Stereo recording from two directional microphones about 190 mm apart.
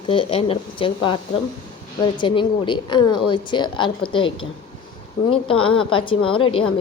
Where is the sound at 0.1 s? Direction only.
30° left (ahead or behind).